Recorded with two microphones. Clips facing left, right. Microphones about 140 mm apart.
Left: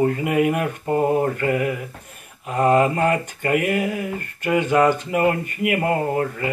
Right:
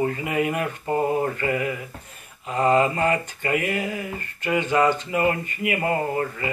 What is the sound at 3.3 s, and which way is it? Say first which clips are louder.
Speech: left 4 dB; 55° left (ahead or behind).